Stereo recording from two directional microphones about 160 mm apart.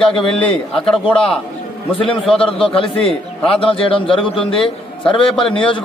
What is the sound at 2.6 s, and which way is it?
A man's voice, 35° left (ahead or behind).